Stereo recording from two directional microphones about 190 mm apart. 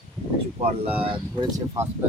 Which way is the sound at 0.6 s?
35° right (ahead or behind).